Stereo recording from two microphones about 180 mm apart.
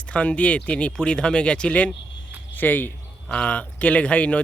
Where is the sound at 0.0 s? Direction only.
5° left (ahead or behind).